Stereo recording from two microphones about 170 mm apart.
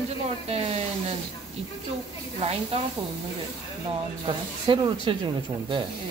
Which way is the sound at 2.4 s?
35° right (ahead or behind).